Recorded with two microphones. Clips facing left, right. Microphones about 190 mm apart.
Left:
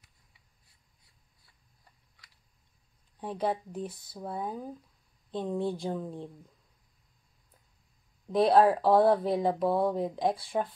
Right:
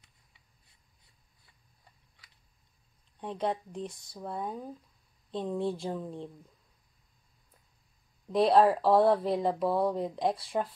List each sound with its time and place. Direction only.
3.2 s speech: 5° left (ahead or behind)
8.3 s speech: centre (ahead or behind)